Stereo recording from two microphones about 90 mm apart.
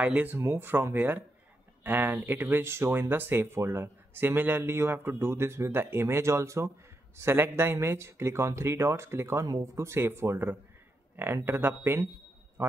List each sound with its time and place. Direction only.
0.0 s speech: 15° right (ahead or behind); by 12.7 s 30° right (ahead or behind)